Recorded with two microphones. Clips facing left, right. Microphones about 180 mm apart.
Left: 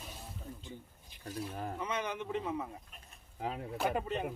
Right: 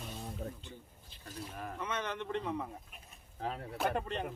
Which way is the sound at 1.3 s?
30° left (ahead or behind).